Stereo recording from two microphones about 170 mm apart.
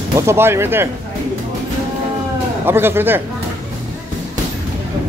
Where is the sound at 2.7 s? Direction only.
15° right (ahead or behind).